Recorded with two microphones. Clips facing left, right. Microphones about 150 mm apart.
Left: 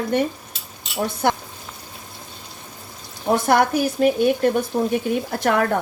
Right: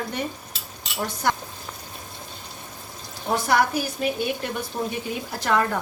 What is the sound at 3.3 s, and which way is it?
Speech, 50° left (ahead or behind).